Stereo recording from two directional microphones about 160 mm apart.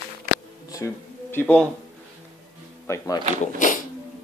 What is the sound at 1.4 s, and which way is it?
Speech, 5° left (ahead or behind).